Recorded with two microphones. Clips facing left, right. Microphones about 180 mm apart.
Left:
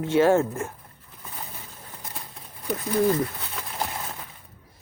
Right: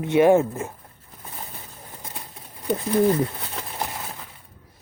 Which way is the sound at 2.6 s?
25° right (ahead or behind).